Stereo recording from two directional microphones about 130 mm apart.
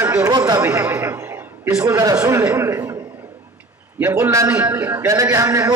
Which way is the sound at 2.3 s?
20° right (ahead or behind).